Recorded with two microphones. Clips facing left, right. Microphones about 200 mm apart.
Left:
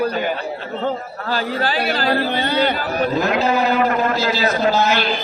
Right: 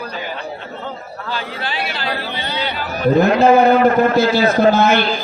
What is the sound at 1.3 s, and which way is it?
Speech, 40° left (ahead or behind).